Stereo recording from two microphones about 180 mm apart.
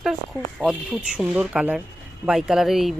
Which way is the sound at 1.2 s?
5° right (ahead or behind).